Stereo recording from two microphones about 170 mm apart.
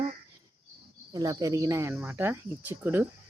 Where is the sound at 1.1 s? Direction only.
20° right (ahead or behind).